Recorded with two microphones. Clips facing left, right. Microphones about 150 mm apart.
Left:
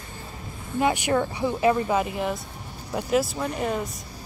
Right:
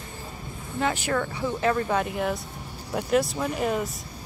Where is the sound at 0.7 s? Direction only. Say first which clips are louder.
Left 4 dB; 15° left (ahead or behind); by 3.9 s centre (ahead or behind).